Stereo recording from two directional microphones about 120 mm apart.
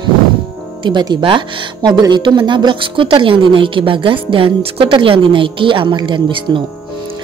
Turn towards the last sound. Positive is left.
turn(degrees=-40)  # may be behind; listen again after turning